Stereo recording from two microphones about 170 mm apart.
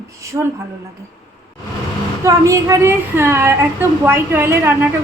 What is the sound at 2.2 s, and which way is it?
A woman's voice, 20° right (ahead or behind).